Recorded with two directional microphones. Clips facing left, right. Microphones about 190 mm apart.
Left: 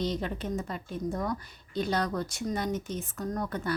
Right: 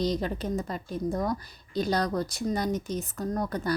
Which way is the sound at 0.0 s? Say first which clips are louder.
Right 3 dB; 35° right (ahead or behind).